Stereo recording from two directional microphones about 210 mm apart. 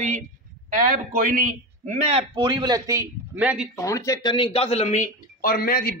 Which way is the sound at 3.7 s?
15° left (ahead or behind).